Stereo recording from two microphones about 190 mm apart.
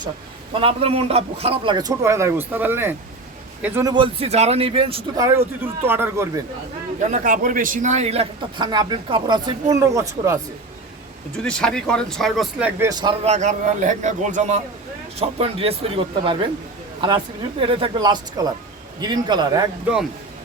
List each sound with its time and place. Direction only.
0.5 s a man's voice: 30° right (ahead or behind); by 3.9 s 15° right (ahead or behind)
3.9 s a man's voice: 30° right (ahead or behind)
5.1 s speech: 15° right (ahead or behind)
7.1 s a man's voice: 45° right (ahead or behind); by 10.3 s 15° right (ahead or behind)
11.4 s speech: 5° left (ahead or behind)
12.9 s a man's voice: 20° right (ahead or behind)
13.2 s a man's voice: 40° right (ahead or behind); by 19.6 s 25° right (ahead or behind)